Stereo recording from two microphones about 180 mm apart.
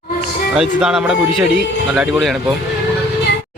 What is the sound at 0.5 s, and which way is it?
Speech, 5° right (ahead or behind).